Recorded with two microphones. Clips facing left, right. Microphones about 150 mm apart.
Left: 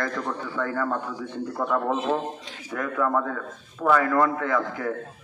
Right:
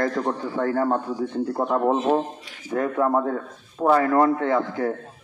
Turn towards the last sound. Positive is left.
turn(degrees=-30)  # may be behind; listen again after turning